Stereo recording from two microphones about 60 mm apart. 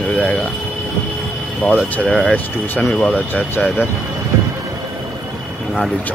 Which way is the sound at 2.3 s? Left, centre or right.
Left.